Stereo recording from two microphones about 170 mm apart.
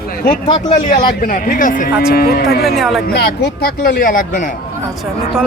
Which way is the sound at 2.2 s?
65° left (ahead or behind).